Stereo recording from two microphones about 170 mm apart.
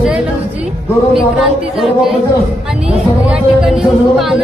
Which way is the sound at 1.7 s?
Centre (ahead or behind).